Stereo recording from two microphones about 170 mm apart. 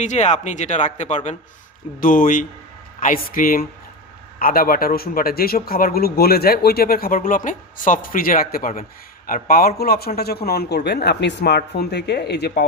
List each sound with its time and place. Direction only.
0.0 s speech: 45° left (ahead or behind); by 12.5 s 75° left (ahead or behind)